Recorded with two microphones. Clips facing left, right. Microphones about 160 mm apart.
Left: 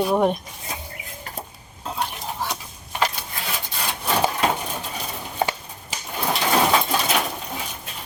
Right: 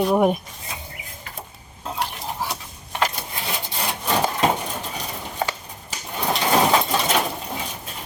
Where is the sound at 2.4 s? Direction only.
5° right (ahead or behind).